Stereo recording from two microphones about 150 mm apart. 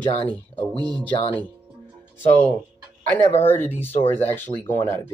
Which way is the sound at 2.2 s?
10° left (ahead or behind).